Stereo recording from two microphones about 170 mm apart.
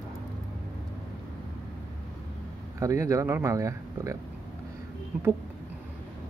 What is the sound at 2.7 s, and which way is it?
A man's voice, 20° right (ahead or behind).